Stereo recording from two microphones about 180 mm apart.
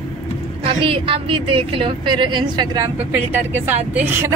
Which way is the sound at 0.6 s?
30° right (ahead or behind).